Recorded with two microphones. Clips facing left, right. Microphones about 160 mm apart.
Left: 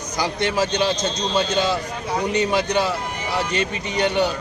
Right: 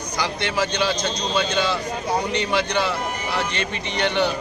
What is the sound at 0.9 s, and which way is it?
Speech, 25° left (ahead or behind).